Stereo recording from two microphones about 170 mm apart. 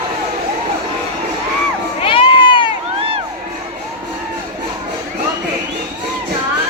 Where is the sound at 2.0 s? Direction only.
30° left (ahead or behind).